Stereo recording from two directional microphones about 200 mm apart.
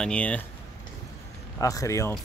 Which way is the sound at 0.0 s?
5° left (ahead or behind).